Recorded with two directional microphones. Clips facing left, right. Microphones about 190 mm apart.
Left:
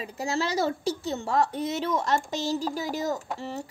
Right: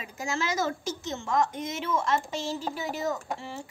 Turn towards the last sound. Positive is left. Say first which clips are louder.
# left 2 dB
turn(degrees=40)  # may be behind; listen again after turning